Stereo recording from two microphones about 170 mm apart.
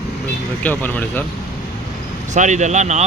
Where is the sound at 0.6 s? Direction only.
10° left (ahead or behind).